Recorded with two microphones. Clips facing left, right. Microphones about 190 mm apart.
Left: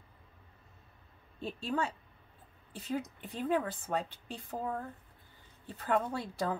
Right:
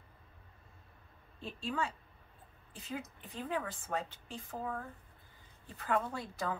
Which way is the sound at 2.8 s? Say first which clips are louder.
Left 6 dB; 35° left (ahead or behind).